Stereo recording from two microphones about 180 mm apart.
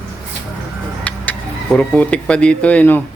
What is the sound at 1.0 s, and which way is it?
Speech, 5° left (ahead or behind).